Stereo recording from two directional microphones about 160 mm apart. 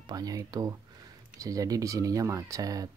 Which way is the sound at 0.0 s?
25° right (ahead or behind).